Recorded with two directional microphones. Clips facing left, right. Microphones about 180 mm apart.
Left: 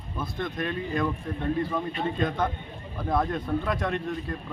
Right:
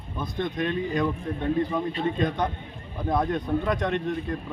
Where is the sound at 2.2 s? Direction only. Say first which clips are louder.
Right 1 dB; 15° right (ahead or behind).